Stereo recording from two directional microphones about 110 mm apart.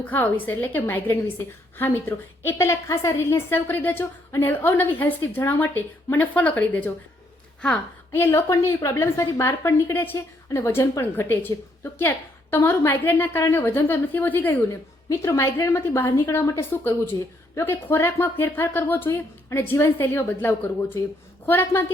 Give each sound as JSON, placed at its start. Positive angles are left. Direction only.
{"t": 0.0, "sound": "a woman's voice", "side_deg": 15}